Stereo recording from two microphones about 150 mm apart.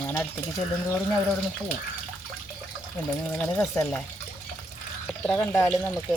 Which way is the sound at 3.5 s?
15° left (ahead or behind).